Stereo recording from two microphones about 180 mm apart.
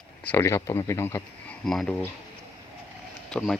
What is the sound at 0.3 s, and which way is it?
Speech, 15° left (ahead or behind).